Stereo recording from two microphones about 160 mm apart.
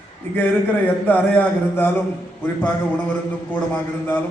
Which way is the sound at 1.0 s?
10° left (ahead or behind).